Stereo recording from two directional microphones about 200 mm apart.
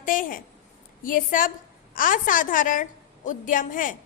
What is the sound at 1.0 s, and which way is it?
A woman's voice, 45° left (ahead or behind).